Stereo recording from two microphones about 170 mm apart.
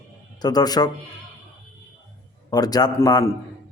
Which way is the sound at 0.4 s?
25° left (ahead or behind).